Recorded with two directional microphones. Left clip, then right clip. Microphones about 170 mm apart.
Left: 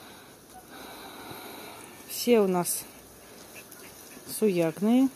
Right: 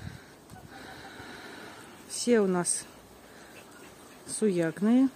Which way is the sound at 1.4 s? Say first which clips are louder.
Left 2 dB; 5° right (ahead or behind).